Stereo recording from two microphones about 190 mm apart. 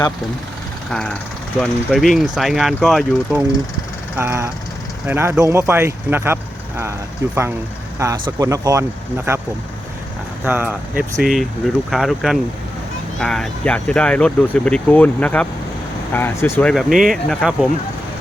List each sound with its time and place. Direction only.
0.9 s speech: 5° left (ahead or behind)
4.2 s speech: 15° right (ahead or behind)
8.4 s speech: 20° right (ahead or behind)
10.4 s speech: 10° right (ahead or behind)